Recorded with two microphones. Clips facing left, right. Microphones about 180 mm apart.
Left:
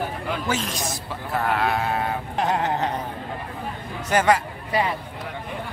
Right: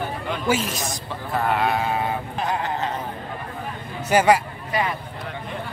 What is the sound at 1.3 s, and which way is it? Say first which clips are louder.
Sheep: right 1 dB; centre (ahead or behind).